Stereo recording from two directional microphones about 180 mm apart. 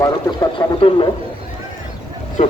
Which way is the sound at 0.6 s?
20° left (ahead or behind).